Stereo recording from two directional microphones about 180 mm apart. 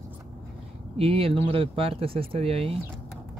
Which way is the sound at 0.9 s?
30° right (ahead or behind).